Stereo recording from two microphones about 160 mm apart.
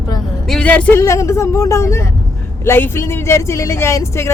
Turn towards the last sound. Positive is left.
turn(degrees=20)  # may be behind; listen again after turning